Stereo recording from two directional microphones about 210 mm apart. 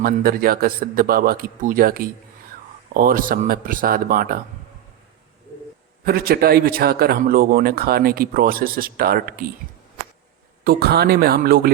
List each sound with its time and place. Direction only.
0.0 s speech: 45° right (ahead or behind)
6.1 s speech: 45° right (ahead or behind)
10.6 s speech: 45° right (ahead or behind)